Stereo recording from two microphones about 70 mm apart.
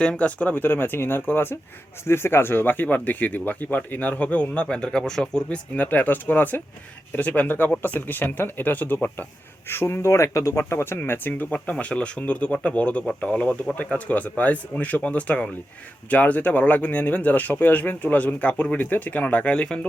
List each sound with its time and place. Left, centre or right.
0.0 s speech: centre
9.6 s speech: left; by 19.8 s centre